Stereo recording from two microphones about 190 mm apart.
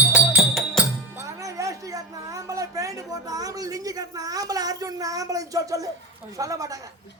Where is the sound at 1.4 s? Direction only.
15° right (ahead or behind).